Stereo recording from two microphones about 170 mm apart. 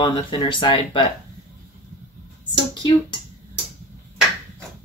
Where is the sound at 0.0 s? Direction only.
25° left (ahead or behind).